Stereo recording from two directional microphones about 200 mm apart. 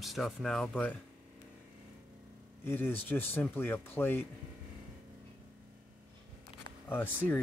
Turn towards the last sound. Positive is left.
turn(degrees=10)  # may be behind; listen again after turning